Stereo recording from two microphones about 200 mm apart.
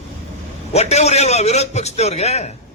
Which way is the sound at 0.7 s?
35° left (ahead or behind).